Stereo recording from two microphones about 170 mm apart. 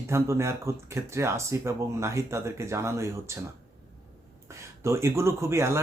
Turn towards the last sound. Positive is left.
turn(degrees=-15)  # may be behind; listen again after turning